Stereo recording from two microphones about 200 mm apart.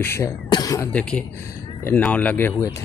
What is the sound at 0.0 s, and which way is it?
Speech, 15° left (ahead or behind).